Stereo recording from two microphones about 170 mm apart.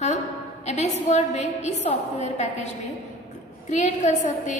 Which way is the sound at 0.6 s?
40° left (ahead or behind).